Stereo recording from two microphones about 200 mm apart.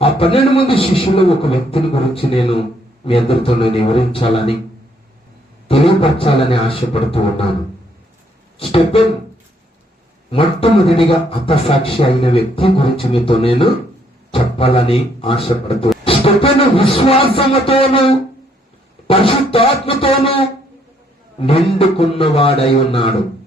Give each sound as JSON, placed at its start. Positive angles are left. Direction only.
{"t": 0.0, "sound": "a man's voice", "side_deg": 30}
{"t": 5.6, "sound": "a man's voice", "side_deg": 25}
{"t": 8.5, "sound": "a sound", "side_deg": 30}
{"t": 10.3, "sound": "a man's voice", "side_deg": 25}
{"t": 21.4, "sound": "a man's voice", "side_deg": 30}